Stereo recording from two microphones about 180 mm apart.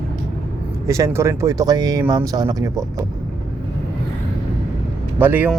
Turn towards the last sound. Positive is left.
turn(degrees=-10)  # may be behind; listen again after turning